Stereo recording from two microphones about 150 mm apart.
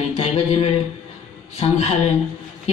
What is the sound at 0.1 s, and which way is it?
A woman's voice, 40° left (ahead or behind).